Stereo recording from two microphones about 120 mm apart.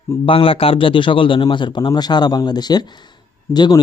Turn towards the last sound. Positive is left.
turn(degrees=35)  # may be behind; listen again after turning